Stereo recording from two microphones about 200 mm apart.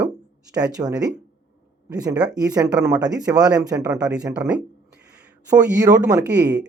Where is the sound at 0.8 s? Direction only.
15° right (ahead or behind).